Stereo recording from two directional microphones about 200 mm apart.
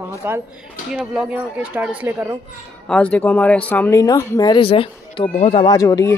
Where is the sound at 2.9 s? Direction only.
5° left (ahead or behind).